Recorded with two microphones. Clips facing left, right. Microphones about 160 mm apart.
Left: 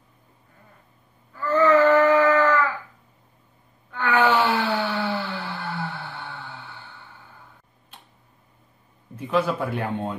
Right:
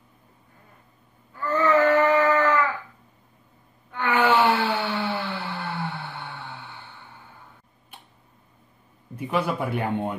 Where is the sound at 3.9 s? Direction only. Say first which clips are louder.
Left 2 dB; 15° right (ahead or behind).